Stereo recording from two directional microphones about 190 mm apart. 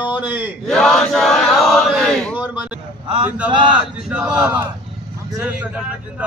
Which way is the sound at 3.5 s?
25° right (ahead or behind).